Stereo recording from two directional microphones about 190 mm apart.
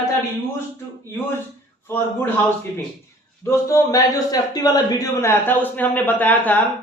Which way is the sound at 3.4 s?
15° left (ahead or behind).